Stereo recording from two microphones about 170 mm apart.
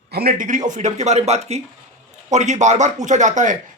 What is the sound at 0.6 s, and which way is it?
Speech, 45° right (ahead or behind).